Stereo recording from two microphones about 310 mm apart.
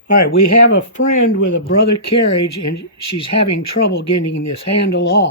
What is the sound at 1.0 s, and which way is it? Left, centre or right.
Speech, left.